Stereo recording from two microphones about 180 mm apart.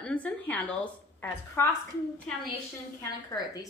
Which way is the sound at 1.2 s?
15° left (ahead or behind).